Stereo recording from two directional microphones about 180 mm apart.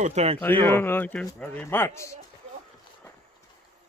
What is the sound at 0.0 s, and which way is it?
Speech, 35° right (ahead or behind).